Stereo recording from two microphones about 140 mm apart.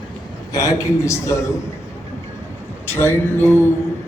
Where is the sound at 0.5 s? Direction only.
20° left (ahead or behind).